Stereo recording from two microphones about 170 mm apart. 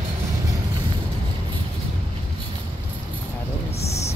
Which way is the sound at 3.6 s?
40° left (ahead or behind).